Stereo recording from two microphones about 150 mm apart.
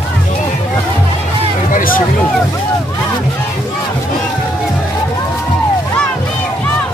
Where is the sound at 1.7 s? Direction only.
65° left (ahead or behind).